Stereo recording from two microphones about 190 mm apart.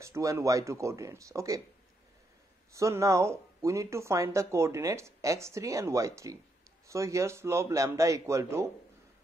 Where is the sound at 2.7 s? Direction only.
15° right (ahead or behind).